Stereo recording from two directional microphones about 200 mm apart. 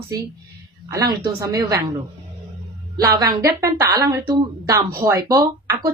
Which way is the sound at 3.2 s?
20° right (ahead or behind).